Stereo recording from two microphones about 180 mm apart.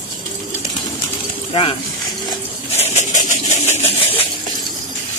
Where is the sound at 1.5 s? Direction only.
30° left (ahead or behind).